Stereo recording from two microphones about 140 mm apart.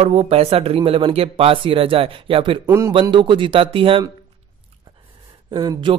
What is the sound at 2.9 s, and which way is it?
Speech, 40° right (ahead or behind).